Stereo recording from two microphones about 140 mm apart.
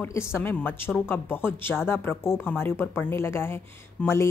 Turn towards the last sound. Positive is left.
turn(degrees=20)  # may be behind; listen again after turning